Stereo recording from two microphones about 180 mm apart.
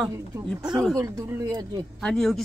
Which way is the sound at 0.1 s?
15° right (ahead or behind).